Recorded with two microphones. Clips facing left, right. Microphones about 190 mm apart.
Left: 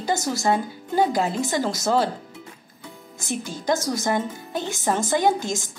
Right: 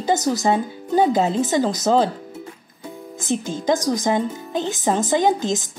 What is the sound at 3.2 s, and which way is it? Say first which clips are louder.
A woman's voice: right 5 dB; 20° right (ahead or behind).